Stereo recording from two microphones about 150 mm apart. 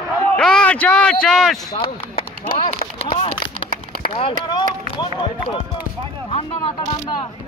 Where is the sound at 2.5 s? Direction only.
40° left (ahead or behind).